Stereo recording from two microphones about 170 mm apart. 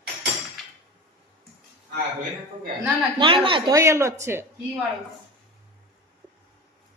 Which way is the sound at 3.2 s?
30° right (ahead or behind).